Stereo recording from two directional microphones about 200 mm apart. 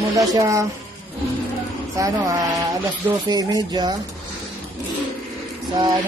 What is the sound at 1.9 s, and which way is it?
Speech, 15° right (ahead or behind).